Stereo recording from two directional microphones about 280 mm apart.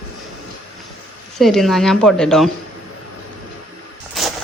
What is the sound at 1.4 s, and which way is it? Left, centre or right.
Speech, centre.